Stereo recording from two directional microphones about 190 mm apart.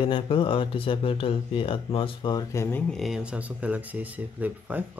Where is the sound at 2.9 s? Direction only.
Centre (ahead or behind).